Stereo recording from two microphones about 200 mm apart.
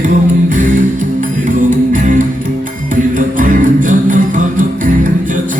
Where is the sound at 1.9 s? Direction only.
40° right (ahead or behind).